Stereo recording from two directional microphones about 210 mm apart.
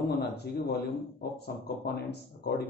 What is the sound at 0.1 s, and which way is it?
A man's voice, 50° left (ahead or behind).